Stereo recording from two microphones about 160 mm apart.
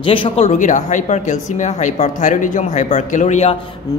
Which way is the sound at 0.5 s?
50° left (ahead or behind).